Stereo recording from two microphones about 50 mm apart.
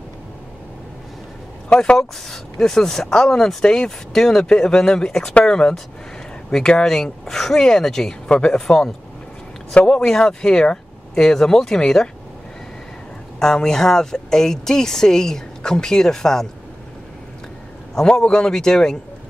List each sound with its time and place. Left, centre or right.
1.7 s speech: left
2.0 s speech: centre
13.4 s speech: centre
17.9 s speech: centre